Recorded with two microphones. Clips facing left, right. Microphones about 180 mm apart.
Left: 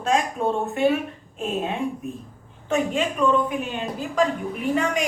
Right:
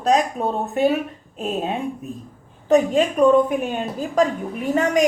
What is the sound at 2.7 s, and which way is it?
A woman's voice, 45° right (ahead or behind).